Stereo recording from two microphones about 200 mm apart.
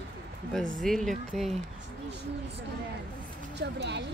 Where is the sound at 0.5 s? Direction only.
Centre (ahead or behind).